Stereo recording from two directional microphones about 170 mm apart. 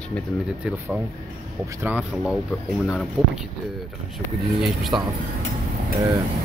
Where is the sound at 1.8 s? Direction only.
10° right (ahead or behind).